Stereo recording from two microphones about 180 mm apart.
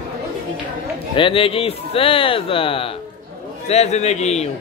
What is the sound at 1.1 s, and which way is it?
Speech, 30° left (ahead or behind).